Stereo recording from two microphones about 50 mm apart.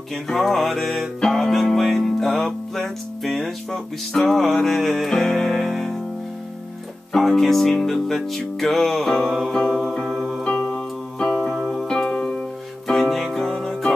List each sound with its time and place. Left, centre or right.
0.1 s music: centre
7.2 s speech: centre
7.7 s music: centre
9.7 s music: centre
10.4 s music: centre
11.6 s music: centre
11.9 s music: centre